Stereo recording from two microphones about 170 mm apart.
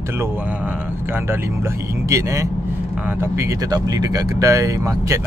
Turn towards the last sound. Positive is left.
turn(degrees=-20)  # may be behind; listen again after turning